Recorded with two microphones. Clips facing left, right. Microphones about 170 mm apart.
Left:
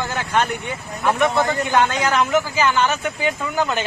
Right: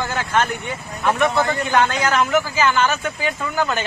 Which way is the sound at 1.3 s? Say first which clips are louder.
Even; 20° left (ahead or behind).